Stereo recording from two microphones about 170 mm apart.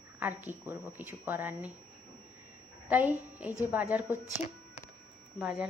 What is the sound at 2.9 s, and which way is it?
A woman's voice, 10° right (ahead or behind).